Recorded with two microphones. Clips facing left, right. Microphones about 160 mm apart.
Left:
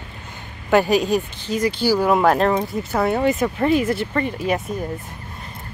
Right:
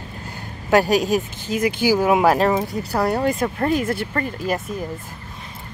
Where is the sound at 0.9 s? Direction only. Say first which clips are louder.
Even; 40° right (ahead or behind).